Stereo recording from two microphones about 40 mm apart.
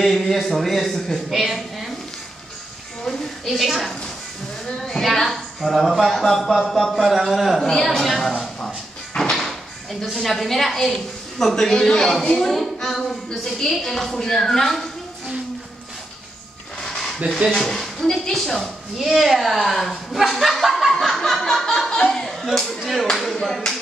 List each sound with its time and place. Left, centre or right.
0.0 s speech: centre
1.3 s a woman's voice: centre
3.1 s a sound: centre
4.6 s a sound: centre
5.0 s speech: centre
7.6 s a woman's voice: centre
9.1 s music: centre
10.2 s a woman's voice: centre
16.8 s a sound: centre
17.5 s a woman's voice: centre
20.6 s snicker: centre
20.9 s a woman's voice: centre
22.8 s speech: centre
23.3 s a woman's voice: centre